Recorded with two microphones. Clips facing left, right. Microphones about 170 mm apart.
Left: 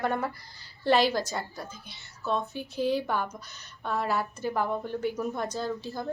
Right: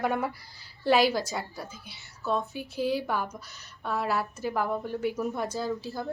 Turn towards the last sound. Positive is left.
turn(degrees=0)  # may be behind; listen again after turning